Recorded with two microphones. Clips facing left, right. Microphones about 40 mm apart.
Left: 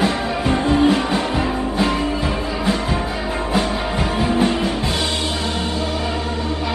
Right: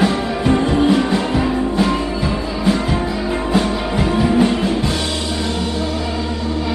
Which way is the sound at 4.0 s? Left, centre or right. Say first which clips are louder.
Right 4 dB; left.